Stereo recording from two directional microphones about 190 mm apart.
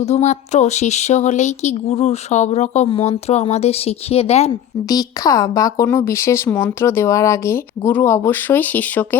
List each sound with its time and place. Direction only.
0.0 s speech: 35° left (ahead or behind)
4.9 s speech: 20° left (ahead or behind)